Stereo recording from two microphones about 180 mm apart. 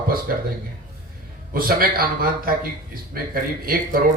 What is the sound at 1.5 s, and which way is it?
Speech, 55° right (ahead or behind).